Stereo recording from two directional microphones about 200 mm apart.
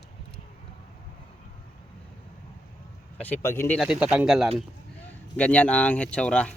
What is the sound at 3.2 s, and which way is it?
Speech, 10° left (ahead or behind).